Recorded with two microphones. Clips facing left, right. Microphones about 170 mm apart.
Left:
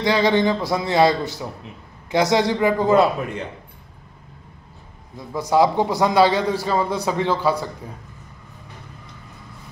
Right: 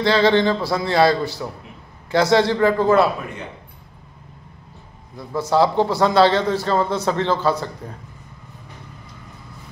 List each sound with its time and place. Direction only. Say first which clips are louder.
0.0 s a man's voice: right 2 dB; 15° left (ahead or behind)
5.3 s a man's voice: even; 15° left (ahead or behind)